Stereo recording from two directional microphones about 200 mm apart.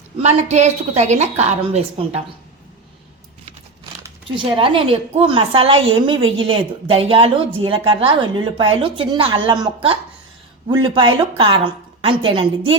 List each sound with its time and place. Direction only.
0.2 s a woman's voice: 35° right (ahead or behind)
4.4 s a woman's voice: 25° right (ahead or behind)